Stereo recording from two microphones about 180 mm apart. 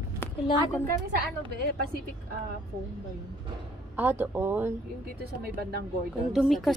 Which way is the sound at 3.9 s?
10° right (ahead or behind).